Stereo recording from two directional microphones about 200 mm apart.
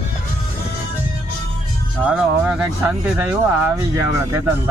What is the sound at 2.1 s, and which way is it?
Speech, 5° right (ahead or behind).